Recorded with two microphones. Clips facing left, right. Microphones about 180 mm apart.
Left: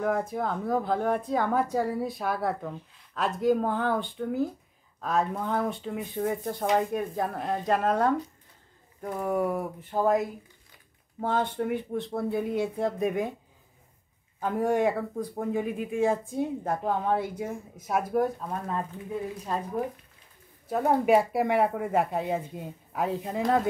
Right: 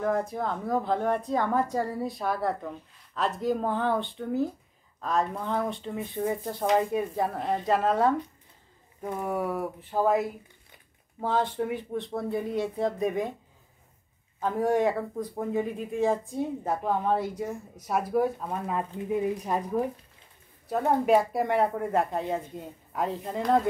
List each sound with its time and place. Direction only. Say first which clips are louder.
0.0 s speech: even; centre (ahead or behind)
14.4 s speech: even; centre (ahead or behind)
20.6 s speech: left 1 dB; 5° left (ahead or behind)